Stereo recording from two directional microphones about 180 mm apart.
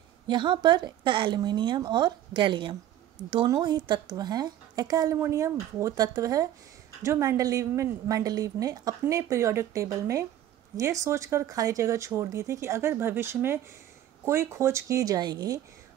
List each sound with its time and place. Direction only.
0.3 s a woman's voice: 25° right (ahead or behind)